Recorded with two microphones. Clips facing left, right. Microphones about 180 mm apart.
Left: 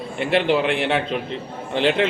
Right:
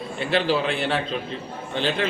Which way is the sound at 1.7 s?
75° left (ahead or behind).